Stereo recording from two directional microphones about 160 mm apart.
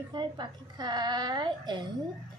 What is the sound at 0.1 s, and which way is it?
A woman's voice, 25° right (ahead or behind).